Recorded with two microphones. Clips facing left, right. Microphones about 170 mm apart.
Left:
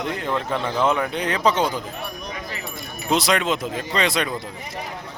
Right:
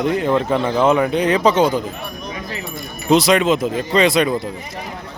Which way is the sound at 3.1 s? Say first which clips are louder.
Right 7 dB; centre (ahead or behind).